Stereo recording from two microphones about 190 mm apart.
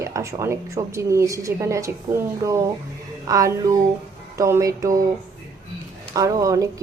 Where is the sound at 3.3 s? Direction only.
15° right (ahead or behind).